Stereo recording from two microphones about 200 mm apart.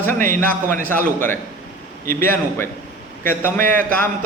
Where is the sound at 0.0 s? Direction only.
10° left (ahead or behind).